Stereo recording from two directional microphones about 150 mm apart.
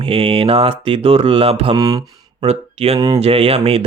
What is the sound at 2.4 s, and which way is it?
Speech, 45° right (ahead or behind).